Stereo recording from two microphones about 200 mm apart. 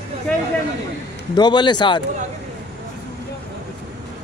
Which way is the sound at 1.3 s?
20° left (ahead or behind).